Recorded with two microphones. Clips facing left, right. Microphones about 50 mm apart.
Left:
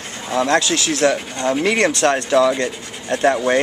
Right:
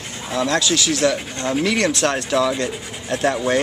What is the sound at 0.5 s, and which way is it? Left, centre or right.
Speech, left.